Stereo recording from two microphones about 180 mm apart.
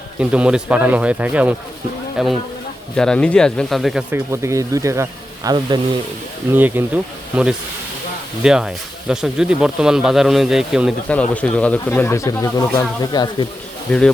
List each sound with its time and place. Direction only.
0.2 s speech: 5° right (ahead or behind)
4.1 s speech: 15° right (ahead or behind)
6.5 s speech: 10° right (ahead or behind); by 13.5 s 25° left (ahead or behind)
13.9 s speech: 5° left (ahead or behind)